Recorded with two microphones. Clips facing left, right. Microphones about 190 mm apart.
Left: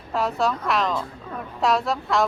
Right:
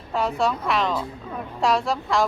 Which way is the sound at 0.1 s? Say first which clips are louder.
Even; centre (ahead or behind).